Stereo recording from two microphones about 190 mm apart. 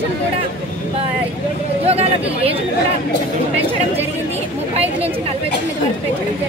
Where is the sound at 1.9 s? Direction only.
30° right (ahead or behind).